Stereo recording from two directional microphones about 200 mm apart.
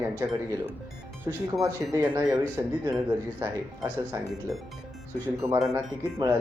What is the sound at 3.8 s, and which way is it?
Speech, centre (ahead or behind).